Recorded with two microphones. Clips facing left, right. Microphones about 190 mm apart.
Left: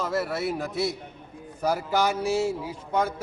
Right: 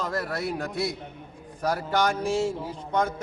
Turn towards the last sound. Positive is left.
turn(degrees=5)  # may be behind; listen again after turning